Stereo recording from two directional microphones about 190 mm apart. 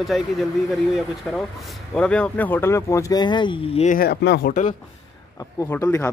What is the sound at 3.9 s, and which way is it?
Speech, 60° left (ahead or behind).